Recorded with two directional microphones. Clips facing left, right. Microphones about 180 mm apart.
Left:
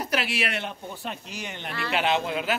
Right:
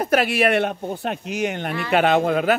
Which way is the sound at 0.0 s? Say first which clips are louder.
Right 10 dB; 50° right (ahead or behind).